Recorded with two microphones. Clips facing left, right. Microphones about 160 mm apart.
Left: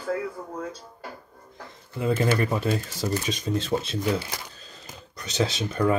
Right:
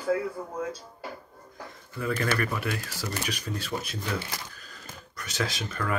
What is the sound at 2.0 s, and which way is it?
Speech, 20° left (ahead or behind).